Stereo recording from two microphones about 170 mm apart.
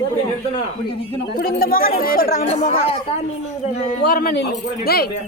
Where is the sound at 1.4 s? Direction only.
60° left (ahead or behind).